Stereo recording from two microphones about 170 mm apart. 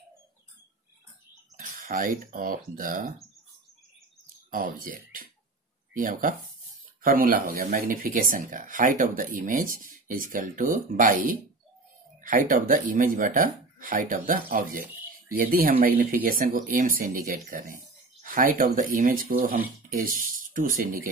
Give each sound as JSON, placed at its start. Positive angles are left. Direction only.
{"t": 1.6, "sound": "speech", "side_deg": -50}
{"t": 4.5, "sound": "speech", "side_deg": -55}